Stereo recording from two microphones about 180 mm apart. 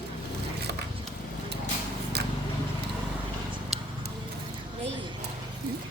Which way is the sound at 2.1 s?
65° right (ahead or behind).